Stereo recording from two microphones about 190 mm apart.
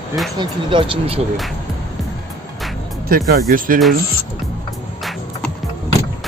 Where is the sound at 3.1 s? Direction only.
55° right (ahead or behind).